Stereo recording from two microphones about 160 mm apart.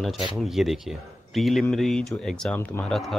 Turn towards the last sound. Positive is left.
turn(degrees=5)  # may be behind; listen again after turning